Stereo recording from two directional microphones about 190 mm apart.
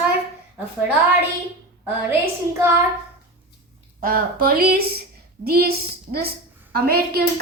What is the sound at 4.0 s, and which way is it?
A child's voice, 50° right (ahead or behind).